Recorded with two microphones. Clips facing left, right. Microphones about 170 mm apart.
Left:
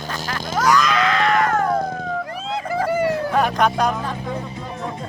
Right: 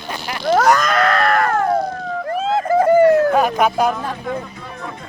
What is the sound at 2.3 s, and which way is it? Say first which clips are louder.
Vehicle: right 13 dB; 45° right (ahead or behind).